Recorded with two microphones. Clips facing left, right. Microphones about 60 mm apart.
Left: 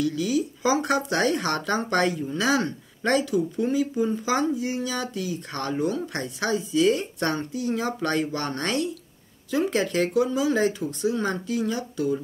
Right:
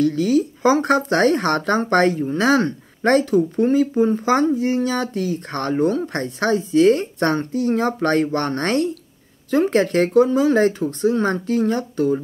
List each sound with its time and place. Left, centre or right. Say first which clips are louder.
0.0 s speech: right 7 dB; right